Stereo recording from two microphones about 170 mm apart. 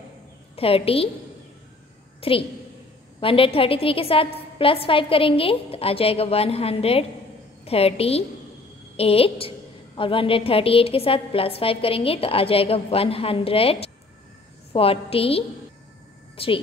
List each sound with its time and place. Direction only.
0.6 s a woman's voice: 35° left (ahead or behind)
2.1 s a sound: 35° left (ahead or behind)
3.2 s a woman's voice: 30° left (ahead or behind)